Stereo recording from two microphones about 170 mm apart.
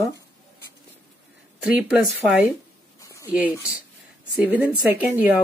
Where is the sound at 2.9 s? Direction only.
20° left (ahead or behind).